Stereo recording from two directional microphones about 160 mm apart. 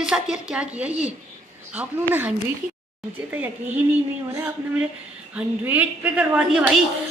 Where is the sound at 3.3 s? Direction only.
10° right (ahead or behind).